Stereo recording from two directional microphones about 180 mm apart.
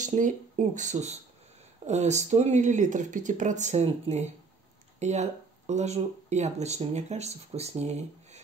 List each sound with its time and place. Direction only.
0.0 s speech: 45° right (ahead or behind)